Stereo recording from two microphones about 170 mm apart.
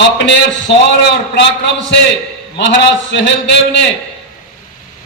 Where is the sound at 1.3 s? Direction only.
90° left.